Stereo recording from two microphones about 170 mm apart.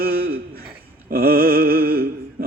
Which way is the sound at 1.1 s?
60° right (ahead or behind).